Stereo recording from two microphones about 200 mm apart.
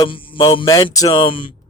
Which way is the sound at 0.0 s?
25° left (ahead or behind).